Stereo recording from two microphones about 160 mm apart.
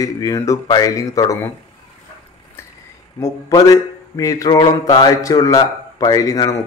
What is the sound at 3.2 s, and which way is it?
Speech, 20° left (ahead or behind).